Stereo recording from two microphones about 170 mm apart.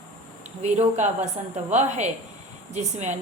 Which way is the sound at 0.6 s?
40° right (ahead or behind).